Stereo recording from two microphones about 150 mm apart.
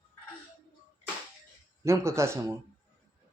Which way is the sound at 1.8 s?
20° right (ahead or behind).